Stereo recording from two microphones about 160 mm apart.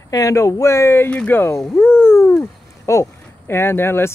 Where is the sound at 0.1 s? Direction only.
20° left (ahead or behind).